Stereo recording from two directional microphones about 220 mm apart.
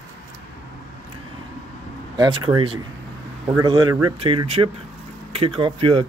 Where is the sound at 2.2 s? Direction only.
20° right (ahead or behind).